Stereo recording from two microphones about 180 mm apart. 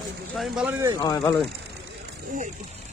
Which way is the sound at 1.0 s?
20° left (ahead or behind).